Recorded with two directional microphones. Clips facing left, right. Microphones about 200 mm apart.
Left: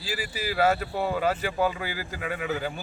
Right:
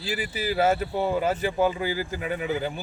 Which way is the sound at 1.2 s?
20° right (ahead or behind).